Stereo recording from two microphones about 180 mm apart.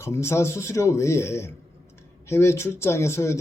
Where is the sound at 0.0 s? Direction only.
15° left (ahead or behind).